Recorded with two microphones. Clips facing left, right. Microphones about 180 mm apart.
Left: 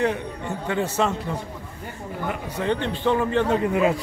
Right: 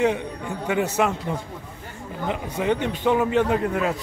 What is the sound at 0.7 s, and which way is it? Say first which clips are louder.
Speech: right 2 dB; 15° right (ahead or behind).